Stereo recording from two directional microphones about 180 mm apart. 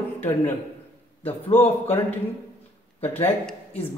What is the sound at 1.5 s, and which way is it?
Speech, 10° left (ahead or behind).